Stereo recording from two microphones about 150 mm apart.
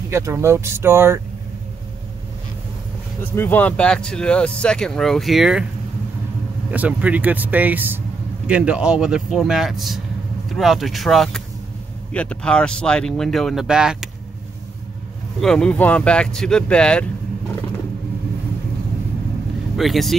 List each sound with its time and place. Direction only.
0.1 s speech: 20° right (ahead or behind)
3.2 s speech: 15° left (ahead or behind); by 5.7 s 5° right (ahead or behind)
6.7 s speech: 10° right (ahead or behind)
15.4 s speech: 5° left (ahead or behind)
19.8 s speech: centre (ahead or behind)